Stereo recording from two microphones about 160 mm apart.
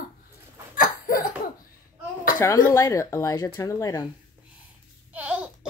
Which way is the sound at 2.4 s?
20° left (ahead or behind).